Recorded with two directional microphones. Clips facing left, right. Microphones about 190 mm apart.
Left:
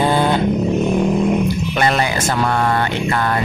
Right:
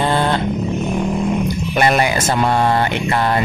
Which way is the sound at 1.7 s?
15° right (ahead or behind).